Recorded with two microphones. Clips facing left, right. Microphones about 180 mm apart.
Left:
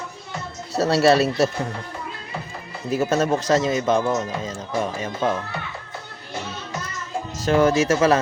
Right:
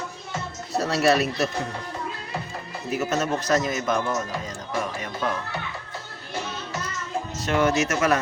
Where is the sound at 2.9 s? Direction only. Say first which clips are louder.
Left 5 dB; 30° left (ahead or behind).